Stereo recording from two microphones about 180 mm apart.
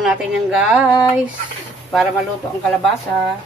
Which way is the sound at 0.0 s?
5° right (ahead or behind).